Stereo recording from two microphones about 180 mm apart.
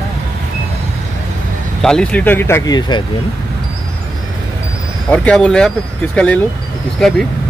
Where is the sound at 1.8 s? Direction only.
5° left (ahead or behind); by 3.0 s 25° left (ahead or behind).